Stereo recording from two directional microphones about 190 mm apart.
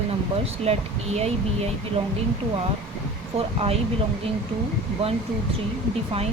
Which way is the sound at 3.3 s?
30° right (ahead or behind).